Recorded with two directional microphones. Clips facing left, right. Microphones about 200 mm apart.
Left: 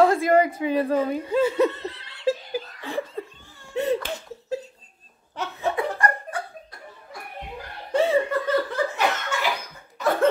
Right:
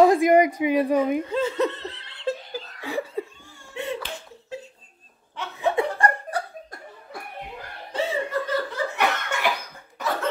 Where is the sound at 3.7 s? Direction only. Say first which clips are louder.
Left 7 dB; 40° left (ahead or behind).